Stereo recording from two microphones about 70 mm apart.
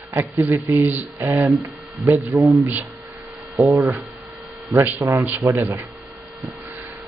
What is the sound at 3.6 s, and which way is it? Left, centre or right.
Speech, centre.